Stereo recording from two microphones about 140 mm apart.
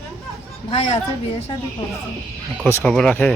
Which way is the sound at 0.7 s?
45° left (ahead or behind).